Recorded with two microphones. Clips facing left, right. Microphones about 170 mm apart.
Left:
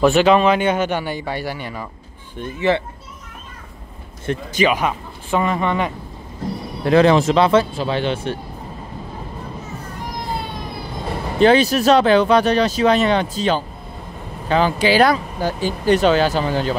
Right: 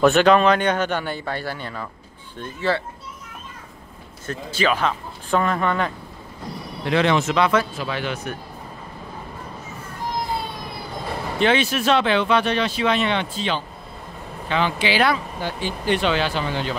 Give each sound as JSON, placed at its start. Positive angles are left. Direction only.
{"t": 0.0, "sound": "a man's voice", "side_deg": 5}
{"t": 4.3, "sound": "a man's voice", "side_deg": 15}
{"t": 6.8, "sound": "speech", "side_deg": 40}
{"t": 11.3, "sound": "speech", "side_deg": 40}